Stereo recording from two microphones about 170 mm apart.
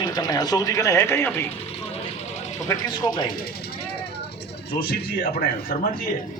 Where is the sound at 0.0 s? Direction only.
25° left (ahead or behind).